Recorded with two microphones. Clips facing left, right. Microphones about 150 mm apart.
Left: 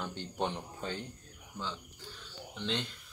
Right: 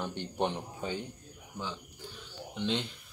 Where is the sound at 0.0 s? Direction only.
15° right (ahead or behind).